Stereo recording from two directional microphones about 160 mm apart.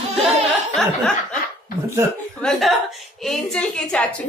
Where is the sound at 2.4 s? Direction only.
Centre (ahead or behind).